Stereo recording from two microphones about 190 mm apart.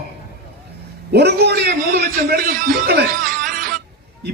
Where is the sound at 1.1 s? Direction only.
60° right (ahead or behind).